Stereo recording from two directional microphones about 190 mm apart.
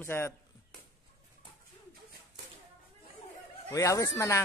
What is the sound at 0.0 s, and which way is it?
Speech, 10° left (ahead or behind).